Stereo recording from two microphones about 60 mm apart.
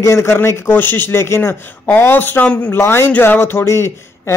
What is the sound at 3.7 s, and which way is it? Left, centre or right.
Speech, left.